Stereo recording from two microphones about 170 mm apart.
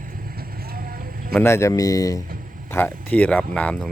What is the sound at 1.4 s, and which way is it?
Speech, 15° left (ahead or behind).